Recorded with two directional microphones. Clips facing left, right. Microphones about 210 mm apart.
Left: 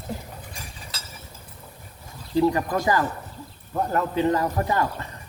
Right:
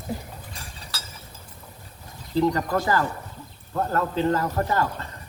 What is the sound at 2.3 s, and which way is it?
A man's voice, 15° left (ahead or behind).